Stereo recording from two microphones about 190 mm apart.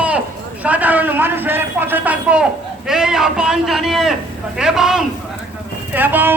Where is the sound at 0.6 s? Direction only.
10° right (ahead or behind).